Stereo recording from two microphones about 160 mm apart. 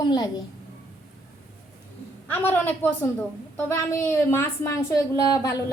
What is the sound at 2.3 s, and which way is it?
A woman's voice, 15° left (ahead or behind).